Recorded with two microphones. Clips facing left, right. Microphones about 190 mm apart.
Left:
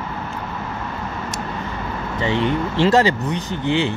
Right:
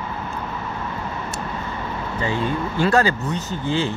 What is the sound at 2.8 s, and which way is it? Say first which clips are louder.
Speech: left 2 dB; 20° left (ahead or behind).